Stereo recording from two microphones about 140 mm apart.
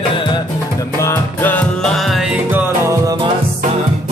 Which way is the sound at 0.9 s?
20° left (ahead or behind).